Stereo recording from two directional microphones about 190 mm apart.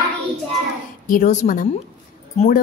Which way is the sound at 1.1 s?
45° left (ahead or behind).